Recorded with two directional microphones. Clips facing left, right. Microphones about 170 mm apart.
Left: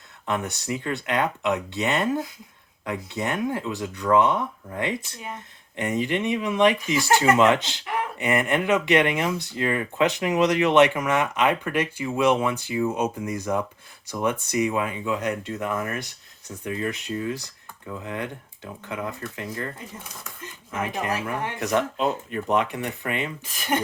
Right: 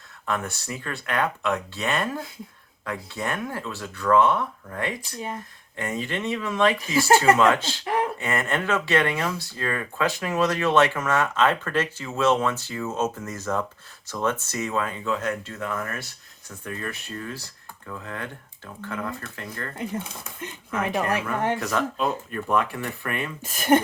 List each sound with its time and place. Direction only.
0.3 s speech: 20° left (ahead or behind)
20.7 s speech: 65° right (ahead or behind)
21.8 s speech: 20° left (ahead or behind)
23.4 s speech: 45° right (ahead or behind)